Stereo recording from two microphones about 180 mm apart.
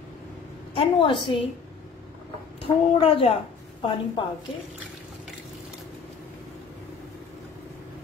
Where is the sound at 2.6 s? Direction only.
35° left (ahead or behind).